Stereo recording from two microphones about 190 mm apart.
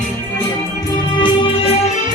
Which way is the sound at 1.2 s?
25° left (ahead or behind).